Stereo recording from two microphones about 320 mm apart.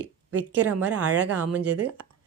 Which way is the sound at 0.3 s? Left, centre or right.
Right.